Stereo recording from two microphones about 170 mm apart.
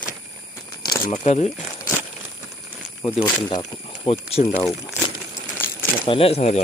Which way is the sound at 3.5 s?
35° left (ahead or behind).